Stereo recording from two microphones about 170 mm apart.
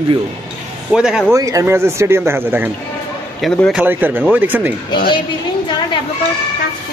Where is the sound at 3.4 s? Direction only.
5° left (ahead or behind).